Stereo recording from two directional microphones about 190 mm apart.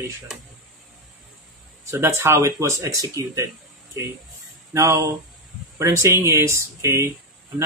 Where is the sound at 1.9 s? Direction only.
15° right (ahead or behind).